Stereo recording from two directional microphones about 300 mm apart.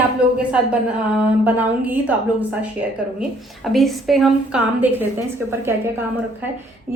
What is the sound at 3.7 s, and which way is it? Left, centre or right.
Speech, centre.